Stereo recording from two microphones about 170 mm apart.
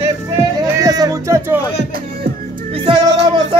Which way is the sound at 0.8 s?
20° right (ahead or behind).